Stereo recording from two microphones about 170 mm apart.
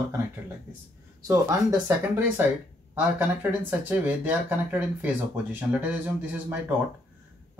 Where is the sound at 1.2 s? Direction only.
15° right (ahead or behind).